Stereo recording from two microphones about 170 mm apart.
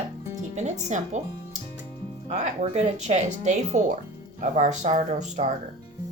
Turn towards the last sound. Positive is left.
turn(degrees=-45)  # may be behind; listen again after turning